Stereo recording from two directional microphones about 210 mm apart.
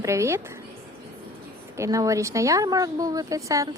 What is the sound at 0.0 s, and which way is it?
Speech, 15° right (ahead or behind).